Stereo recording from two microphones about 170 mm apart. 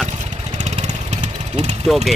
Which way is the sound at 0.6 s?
40° right (ahead or behind).